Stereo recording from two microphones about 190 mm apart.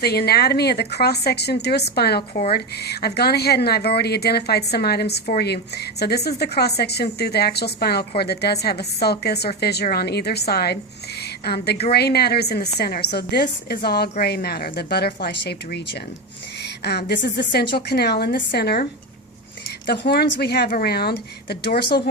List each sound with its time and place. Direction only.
0.0 s speech: 55° left (ahead or behind)
16.6 s a sound: 60° left (ahead or behind)
17.1 s speech: 60° left (ahead or behind)
19.9 s speech: 60° left (ahead or behind)